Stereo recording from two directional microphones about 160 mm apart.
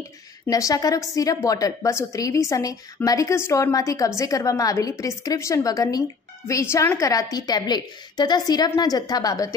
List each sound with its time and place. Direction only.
0.5 s a woman's voice: 20° left (ahead or behind)